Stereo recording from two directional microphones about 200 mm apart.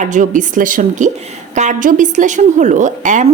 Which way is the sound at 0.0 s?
40° right (ahead or behind).